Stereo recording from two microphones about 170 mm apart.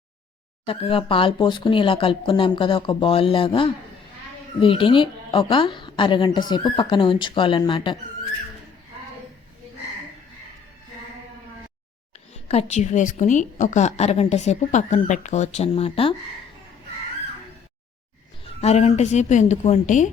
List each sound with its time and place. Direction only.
0.6 s a woman's voice: 30° left (ahead or behind)
12.5 s a woman's voice: 40° left (ahead or behind)
18.6 s a woman's voice: 40° left (ahead or behind)